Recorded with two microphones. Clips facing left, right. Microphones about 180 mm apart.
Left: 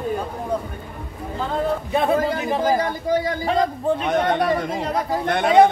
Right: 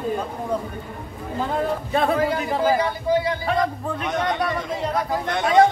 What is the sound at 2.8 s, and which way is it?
Speech, 45° left (ahead or behind).